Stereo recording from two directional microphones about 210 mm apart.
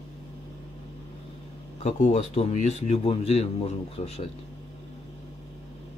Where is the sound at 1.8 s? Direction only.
35° left (ahead or behind).